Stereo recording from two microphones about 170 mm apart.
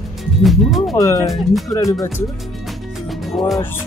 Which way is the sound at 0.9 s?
20° left (ahead or behind).